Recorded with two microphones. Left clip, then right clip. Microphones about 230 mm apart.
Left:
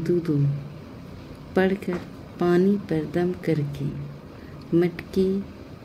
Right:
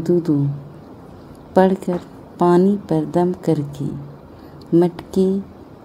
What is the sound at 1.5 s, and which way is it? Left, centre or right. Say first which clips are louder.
A woman's voice: right 8 dB; centre.